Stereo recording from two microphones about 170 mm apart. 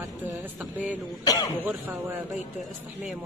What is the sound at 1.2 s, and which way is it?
Speech, 20° left (ahead or behind).